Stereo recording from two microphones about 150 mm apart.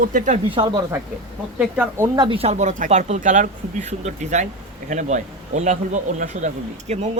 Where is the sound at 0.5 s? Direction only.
35° right (ahead or behind).